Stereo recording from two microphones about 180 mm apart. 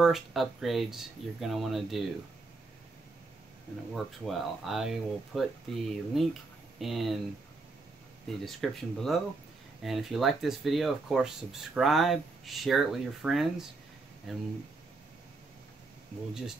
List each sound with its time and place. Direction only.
0.0 s speech: centre (ahead or behind)
3.9 s speech: centre (ahead or behind)
8.5 s speech: centre (ahead or behind)